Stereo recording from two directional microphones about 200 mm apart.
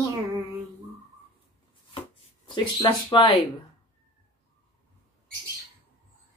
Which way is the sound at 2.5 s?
25° left (ahead or behind).